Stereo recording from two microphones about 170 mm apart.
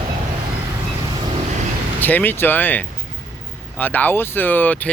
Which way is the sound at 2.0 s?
10° left (ahead or behind).